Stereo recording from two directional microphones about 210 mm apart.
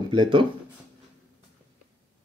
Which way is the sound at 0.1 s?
25° right (ahead or behind).